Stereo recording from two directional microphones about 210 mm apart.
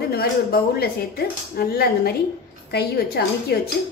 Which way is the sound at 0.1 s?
50° left (ahead or behind).